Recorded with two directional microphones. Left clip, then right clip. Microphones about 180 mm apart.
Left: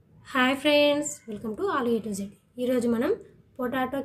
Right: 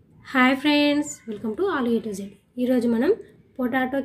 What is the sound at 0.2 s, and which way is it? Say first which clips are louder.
A woman's voice: right 4 dB; 30° right (ahead or behind).